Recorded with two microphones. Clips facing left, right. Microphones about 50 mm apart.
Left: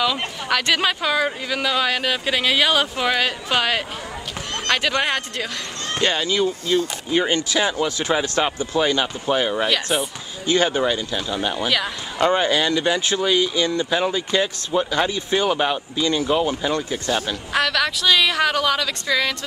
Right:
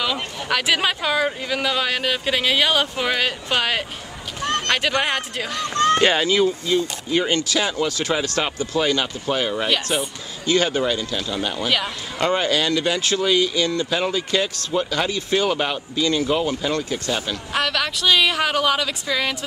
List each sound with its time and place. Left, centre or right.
0.0 s speech: centre
7.1 s speech: centre
9.6 s speech: centre
10.4 s speech: left
15.5 s speech: centre
16.4 s speech: centre
17.5 s speech: centre